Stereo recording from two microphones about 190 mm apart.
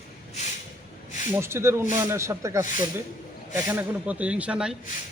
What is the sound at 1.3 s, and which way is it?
Speech, 15° right (ahead or behind).